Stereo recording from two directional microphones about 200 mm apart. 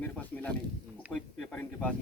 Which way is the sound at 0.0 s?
10° left (ahead or behind).